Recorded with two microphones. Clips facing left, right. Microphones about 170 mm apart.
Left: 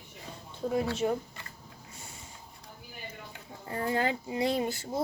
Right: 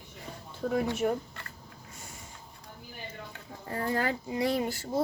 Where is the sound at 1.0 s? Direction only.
20° left (ahead or behind).